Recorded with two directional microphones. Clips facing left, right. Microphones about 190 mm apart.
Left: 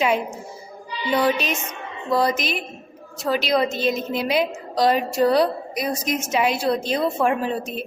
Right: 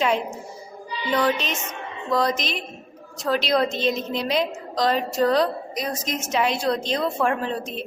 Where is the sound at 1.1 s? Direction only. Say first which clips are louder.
Left 2 dB; 10° left (ahead or behind).